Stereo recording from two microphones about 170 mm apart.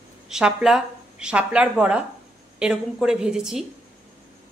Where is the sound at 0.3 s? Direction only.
5° right (ahead or behind).